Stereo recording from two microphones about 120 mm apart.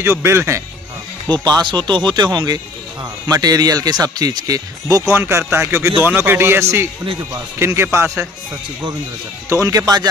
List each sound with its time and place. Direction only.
0.0 s a man's voice: 20° right (ahead or behind)
1.3 s a man's voice: 35° right (ahead or behind)
9.5 s speech: 30° right (ahead or behind)